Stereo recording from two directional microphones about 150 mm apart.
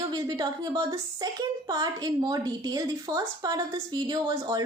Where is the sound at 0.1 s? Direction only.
25° right (ahead or behind).